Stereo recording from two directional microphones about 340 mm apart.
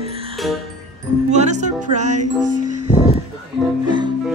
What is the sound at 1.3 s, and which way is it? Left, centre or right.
Music, centre.